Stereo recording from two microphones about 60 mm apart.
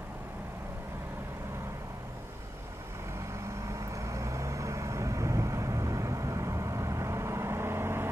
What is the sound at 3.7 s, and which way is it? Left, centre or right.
Vehicle, right.